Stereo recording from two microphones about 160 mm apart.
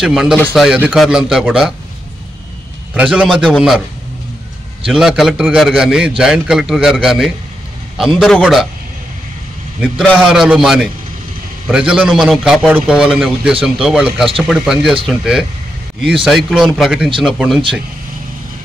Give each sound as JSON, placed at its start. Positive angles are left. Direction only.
{"t": 0.0, "sound": "a man's voice", "side_deg": -5}
{"t": 2.9, "sound": "a man's voice", "side_deg": -5}
{"t": 4.8, "sound": "a man's voice", "side_deg": -5}
{"t": 10.1, "sound": "a man's voice", "side_deg": -5}